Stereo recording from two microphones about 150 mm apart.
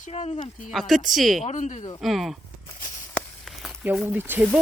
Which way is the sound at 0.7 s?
Centre (ahead or behind).